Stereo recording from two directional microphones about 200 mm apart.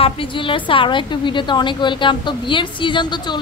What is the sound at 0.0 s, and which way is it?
A woman's voice, 25° left (ahead or behind).